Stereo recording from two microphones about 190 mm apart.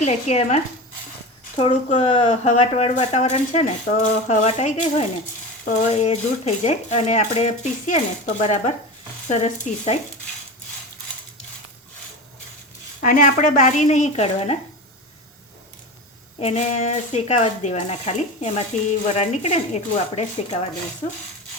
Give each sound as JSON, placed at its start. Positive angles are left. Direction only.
{"t": 0.0, "sound": "speech", "side_deg": 35}
{"t": 13.0, "sound": "speech", "side_deg": 45}
{"t": 16.4, "sound": "speech", "side_deg": 35}